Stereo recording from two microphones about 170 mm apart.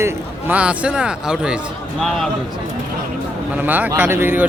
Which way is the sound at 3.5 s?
10° right (ahead or behind).